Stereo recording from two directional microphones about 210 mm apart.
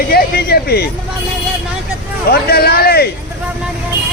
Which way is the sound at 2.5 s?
45° left (ahead or behind).